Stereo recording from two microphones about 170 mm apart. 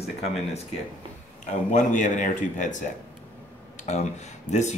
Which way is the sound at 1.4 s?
45° left (ahead or behind).